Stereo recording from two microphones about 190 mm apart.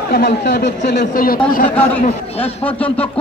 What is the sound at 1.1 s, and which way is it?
Speech, 50° left (ahead or behind).